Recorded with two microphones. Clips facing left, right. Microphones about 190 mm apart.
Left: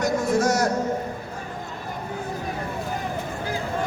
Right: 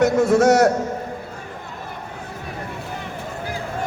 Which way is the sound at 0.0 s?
70° right (ahead or behind).